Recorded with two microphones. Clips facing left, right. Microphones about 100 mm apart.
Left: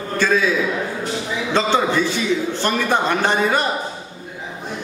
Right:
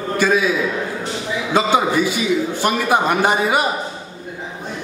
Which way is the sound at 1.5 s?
10° right (ahead or behind).